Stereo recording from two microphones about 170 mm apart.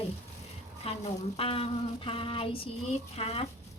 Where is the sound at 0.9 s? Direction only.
35° left (ahead or behind).